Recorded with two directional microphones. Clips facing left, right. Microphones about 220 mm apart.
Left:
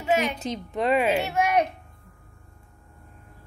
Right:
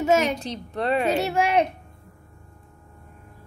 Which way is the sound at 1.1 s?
35° right (ahead or behind).